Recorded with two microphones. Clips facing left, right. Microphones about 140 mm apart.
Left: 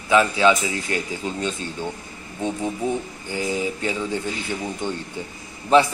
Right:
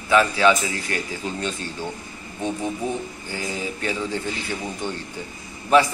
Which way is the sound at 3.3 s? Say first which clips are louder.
Left 5 dB; 20° left (ahead or behind).